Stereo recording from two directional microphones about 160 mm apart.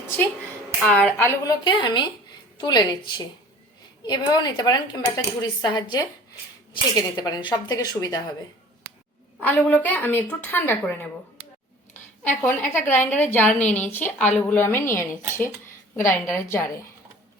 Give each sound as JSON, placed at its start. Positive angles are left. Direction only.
{"t": 0.9, "sound": "a woman's voice", "side_deg": 5}
{"t": 1.2, "sound": "a woman's voice", "side_deg": 15}
{"t": 1.6, "sound": "speech", "side_deg": 30}
{"t": 9.4, "sound": "a woman's voice", "side_deg": 10}
{"t": 12.4, "sound": "a woman's voice", "side_deg": 15}